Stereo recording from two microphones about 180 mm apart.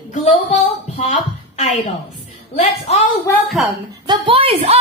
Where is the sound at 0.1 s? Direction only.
35° left (ahead or behind).